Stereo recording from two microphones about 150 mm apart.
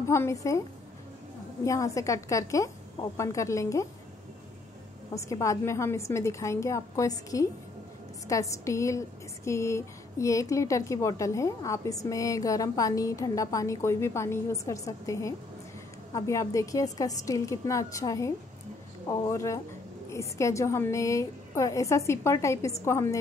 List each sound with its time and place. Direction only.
0.0 s a woman's voice: 20° left (ahead or behind)
1.6 s a woman's voice: 20° left (ahead or behind)
5.1 s a woman's voice: 20° left (ahead or behind)